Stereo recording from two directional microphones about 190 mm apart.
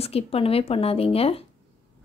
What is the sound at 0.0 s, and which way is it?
A woman's voice, 30° left (ahead or behind).